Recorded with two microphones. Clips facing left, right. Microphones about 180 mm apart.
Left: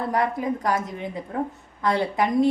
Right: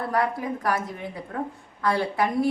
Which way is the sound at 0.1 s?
20° left (ahead or behind).